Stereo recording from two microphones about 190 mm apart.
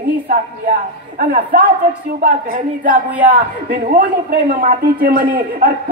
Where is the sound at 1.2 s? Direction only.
45° right (ahead or behind).